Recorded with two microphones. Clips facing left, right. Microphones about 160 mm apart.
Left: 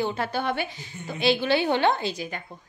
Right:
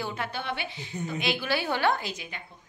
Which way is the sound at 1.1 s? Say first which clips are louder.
Left 7 dB; 30° left (ahead or behind).